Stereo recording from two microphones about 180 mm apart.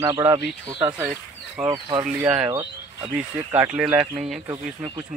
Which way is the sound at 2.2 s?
10° right (ahead or behind).